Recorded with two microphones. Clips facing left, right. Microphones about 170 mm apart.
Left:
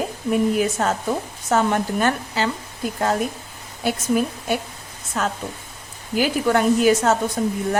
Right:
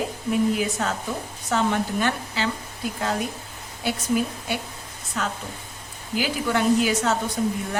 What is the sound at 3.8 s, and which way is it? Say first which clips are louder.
Speech: left 3 dB; 45° left (ahead or behind).